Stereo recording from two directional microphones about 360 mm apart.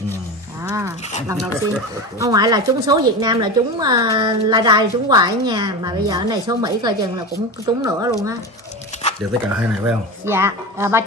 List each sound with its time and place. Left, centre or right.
0.6 s a sound: centre
1.2 s a woman's voice: centre
9.6 s a woman's voice: centre